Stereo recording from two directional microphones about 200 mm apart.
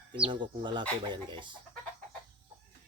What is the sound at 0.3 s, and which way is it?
Speech, 25° right (ahead or behind).